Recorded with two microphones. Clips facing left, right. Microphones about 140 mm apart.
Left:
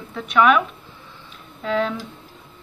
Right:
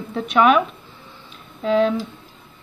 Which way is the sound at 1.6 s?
20° right (ahead or behind).